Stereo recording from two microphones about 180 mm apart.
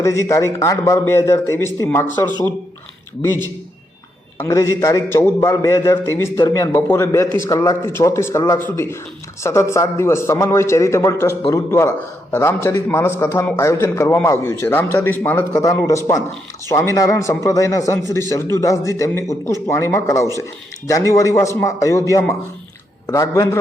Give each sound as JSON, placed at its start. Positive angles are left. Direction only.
{"t": 0.0, "sound": "a man's voice", "side_deg": 15}
{"t": 3.2, "sound": "a man's voice", "side_deg": 15}
{"t": 23.0, "sound": "a man's voice", "side_deg": 15}